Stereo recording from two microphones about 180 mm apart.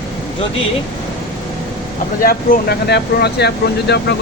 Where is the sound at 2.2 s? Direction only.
55° left (ahead or behind).